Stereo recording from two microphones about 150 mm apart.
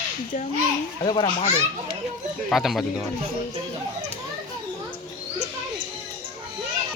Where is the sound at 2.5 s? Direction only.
Centre (ahead or behind).